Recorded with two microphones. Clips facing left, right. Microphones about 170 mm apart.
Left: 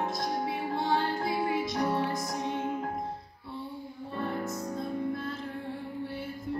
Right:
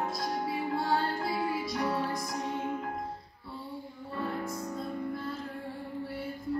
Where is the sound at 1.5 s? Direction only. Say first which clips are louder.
Left 2 dB; 25° left (ahead or behind).